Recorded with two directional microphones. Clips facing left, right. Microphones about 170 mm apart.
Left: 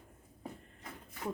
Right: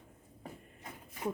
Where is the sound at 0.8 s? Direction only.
15° right (ahead or behind).